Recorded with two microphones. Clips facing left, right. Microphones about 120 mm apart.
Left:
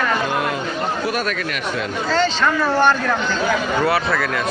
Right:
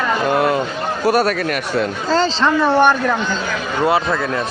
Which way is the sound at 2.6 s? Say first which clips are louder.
Right 4 dB; 20° right (ahead or behind).